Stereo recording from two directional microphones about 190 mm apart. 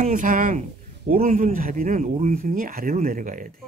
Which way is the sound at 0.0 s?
45° right (ahead or behind).